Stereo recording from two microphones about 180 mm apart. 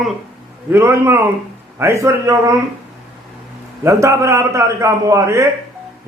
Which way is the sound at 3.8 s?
15° right (ahead or behind).